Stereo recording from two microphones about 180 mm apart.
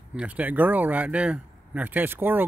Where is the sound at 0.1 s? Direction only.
5° right (ahead or behind).